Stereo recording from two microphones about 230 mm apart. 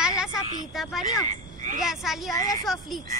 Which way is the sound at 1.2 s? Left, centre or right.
Right.